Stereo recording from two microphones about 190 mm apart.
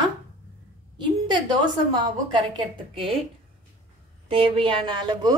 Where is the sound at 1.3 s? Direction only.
25° right (ahead or behind).